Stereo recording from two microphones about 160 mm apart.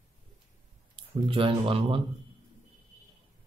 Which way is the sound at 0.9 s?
35° right (ahead or behind).